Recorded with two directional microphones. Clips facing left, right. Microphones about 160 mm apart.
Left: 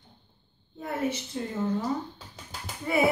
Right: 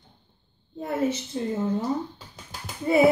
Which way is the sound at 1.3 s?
30° right (ahead or behind).